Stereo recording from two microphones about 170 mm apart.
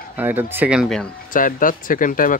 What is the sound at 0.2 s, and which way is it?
Speech, 10° right (ahead or behind).